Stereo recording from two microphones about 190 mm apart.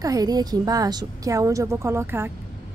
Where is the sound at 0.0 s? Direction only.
20° right (ahead or behind).